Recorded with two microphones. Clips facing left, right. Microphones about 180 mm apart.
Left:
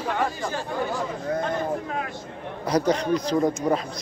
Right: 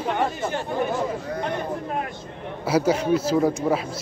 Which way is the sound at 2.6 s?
5° right (ahead or behind).